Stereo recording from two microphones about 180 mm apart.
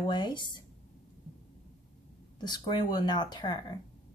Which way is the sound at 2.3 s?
25° left (ahead or behind).